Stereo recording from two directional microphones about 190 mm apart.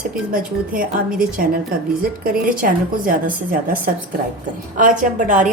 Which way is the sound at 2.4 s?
45° right (ahead or behind).